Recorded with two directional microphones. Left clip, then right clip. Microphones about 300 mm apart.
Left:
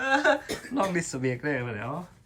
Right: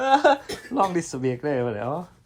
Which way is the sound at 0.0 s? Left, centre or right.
Centre.